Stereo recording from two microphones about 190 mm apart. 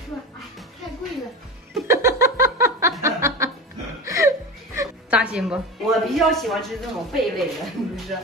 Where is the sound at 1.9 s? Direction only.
15° right (ahead or behind).